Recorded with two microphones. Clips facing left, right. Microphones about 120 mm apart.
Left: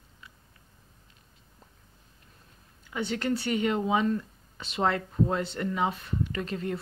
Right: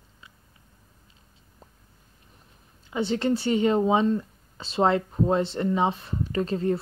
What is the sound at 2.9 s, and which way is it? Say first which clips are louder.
Speech: right 5 dB; 25° right (ahead or behind).